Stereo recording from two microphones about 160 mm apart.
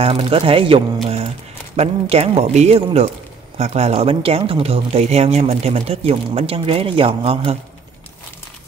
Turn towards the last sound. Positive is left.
turn(degrees=-35)  # may be behind; listen again after turning